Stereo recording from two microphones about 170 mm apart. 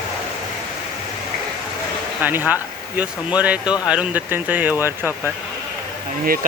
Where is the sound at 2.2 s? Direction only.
10° right (ahead or behind).